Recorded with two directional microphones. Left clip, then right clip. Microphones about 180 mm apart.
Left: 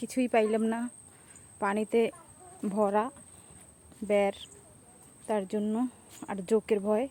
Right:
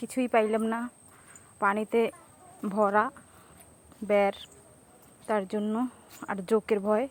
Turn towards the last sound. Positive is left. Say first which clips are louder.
# right 1 dB
turn(degrees=5)  # may be behind; listen again after turning